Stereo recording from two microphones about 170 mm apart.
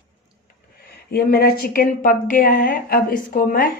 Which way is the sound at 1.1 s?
65° left (ahead or behind).